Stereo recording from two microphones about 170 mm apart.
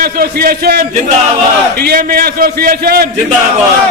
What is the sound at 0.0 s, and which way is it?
A man's voice, 60° right (ahead or behind).